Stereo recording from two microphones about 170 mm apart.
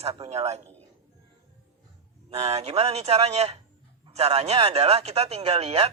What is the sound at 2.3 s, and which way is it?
A man's voice, 40° right (ahead or behind).